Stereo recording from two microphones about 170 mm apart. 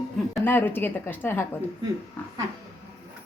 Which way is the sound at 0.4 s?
10° left (ahead or behind).